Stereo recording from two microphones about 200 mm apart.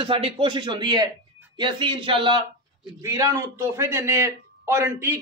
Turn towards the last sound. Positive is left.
turn(degrees=-10)  # may be behind; listen again after turning